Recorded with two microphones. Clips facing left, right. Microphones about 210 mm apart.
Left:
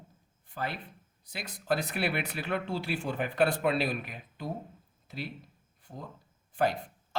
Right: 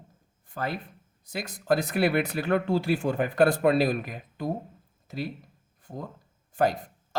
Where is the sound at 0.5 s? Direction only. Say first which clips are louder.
Right 4 dB; 45° right (ahead or behind).